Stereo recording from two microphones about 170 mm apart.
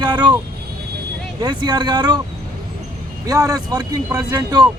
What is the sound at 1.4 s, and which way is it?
Speech, 25° right (ahead or behind).